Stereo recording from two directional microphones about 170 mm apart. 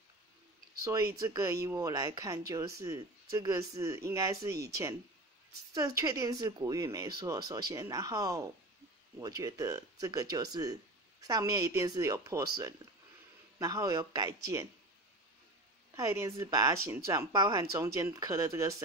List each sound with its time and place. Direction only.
0.8 s speech: 15° right (ahead or behind)
15.9 s speech: 15° right (ahead or behind)